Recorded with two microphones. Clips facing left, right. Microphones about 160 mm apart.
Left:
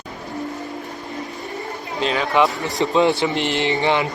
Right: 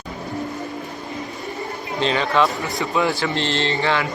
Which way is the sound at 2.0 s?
5° left (ahead or behind).